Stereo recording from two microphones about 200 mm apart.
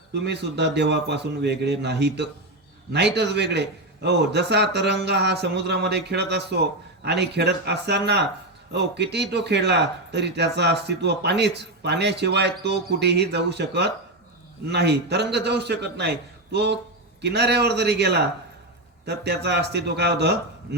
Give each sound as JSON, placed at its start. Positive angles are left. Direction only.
{"t": 0.1, "sound": "a man's voice", "side_deg": -60}